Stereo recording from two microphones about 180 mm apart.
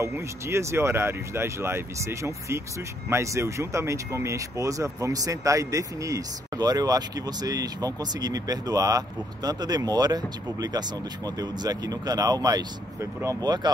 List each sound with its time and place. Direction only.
0.0 s speech: 15° right (ahead or behind)